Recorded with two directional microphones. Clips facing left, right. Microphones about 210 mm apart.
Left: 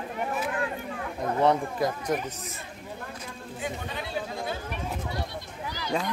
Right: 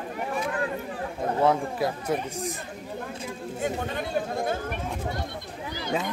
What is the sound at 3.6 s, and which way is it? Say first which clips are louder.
Speech: right 5 dB; 50° right (ahead or behind).